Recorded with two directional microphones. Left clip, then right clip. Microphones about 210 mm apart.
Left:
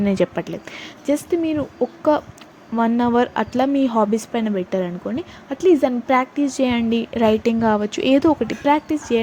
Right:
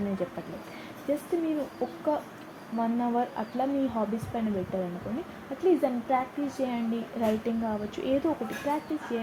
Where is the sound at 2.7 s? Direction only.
45° left (ahead or behind).